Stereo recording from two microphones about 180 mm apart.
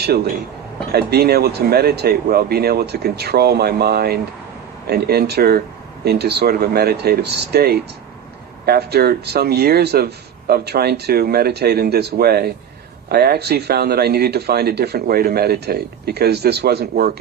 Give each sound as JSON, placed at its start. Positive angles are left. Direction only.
{"t": 0.9, "sound": "a man's voice", "side_deg": -60}